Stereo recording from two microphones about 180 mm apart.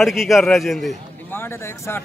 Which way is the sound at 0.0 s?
Centre (ahead or behind).